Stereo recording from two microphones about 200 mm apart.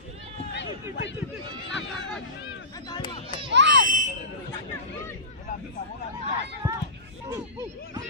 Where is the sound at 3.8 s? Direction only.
40° right (ahead or behind).